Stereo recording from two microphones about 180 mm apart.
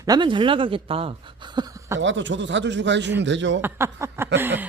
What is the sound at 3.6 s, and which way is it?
Speech, 15° right (ahead or behind).